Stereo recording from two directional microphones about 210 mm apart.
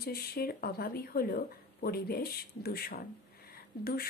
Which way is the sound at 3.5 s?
45° left (ahead or behind).